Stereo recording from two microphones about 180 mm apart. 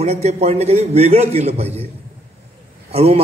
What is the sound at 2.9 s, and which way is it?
Speech, 35° right (ahead or behind).